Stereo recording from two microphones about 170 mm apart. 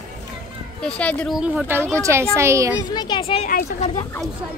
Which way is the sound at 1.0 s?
5° left (ahead or behind).